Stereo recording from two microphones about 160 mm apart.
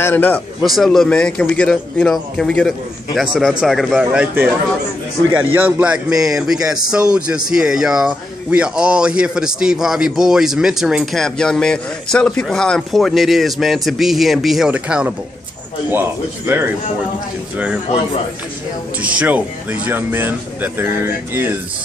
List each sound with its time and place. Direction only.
0.0 s speech: 10° left (ahead or behind); by 16.7 s 15° right (ahead or behind)
18.9 s speech: 10° right (ahead or behind)